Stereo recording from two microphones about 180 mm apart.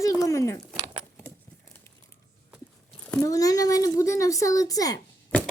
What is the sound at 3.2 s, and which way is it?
Speech, 20° left (ahead or behind).